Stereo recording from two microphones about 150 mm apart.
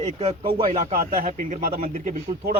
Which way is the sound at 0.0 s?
50° right (ahead or behind).